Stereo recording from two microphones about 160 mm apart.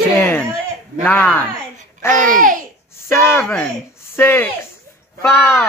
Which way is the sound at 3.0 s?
15° left (ahead or behind).